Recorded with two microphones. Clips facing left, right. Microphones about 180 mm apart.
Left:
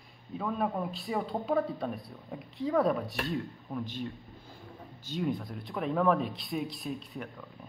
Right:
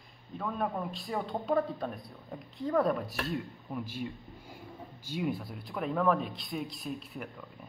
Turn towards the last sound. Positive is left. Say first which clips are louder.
# left 1 dB
turn(degrees=-5)  # may be behind; listen again after turning